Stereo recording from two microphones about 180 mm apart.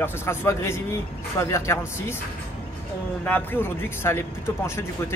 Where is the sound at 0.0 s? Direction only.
15° left (ahead or behind).